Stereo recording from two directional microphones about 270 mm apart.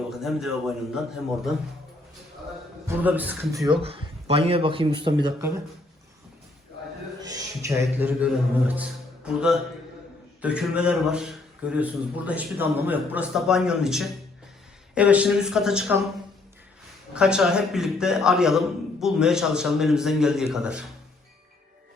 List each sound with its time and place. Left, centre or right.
0.1 s a man's voice: centre
2.8 s speech: centre
7.2 s a man's voice: centre
17.2 s a man's voice: centre